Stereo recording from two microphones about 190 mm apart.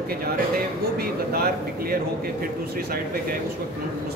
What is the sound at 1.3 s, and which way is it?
Speech, 55° right (ahead or behind).